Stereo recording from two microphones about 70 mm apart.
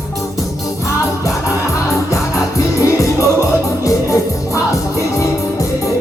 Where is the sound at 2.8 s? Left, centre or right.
Left.